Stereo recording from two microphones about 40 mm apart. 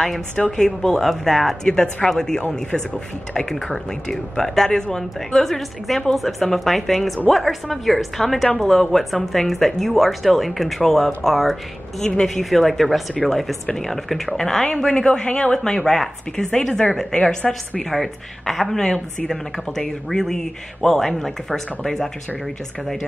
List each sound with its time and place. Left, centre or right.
0.5 s speech: centre
1.6 s speech: left
2.0 s speech: centre
3.6 s speech: centre